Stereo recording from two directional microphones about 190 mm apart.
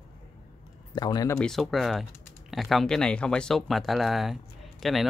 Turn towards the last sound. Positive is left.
turn(degrees=0)  # may be behind; listen again after turning